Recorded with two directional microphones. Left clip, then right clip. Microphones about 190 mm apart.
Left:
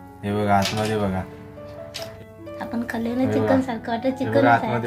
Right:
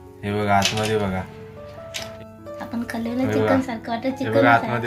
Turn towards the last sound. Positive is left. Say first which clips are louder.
# right 1 dB
turn(degrees=0)  # may be behind; listen again after turning